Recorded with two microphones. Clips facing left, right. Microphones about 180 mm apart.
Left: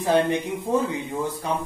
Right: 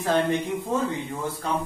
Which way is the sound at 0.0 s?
15° left (ahead or behind).